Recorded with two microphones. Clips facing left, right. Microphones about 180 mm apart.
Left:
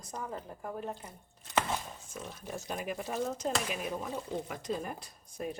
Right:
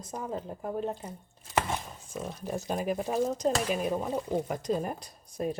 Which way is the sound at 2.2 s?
40° right (ahead or behind).